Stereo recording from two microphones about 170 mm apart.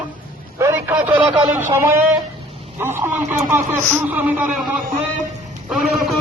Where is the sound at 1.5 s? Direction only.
15° right (ahead or behind).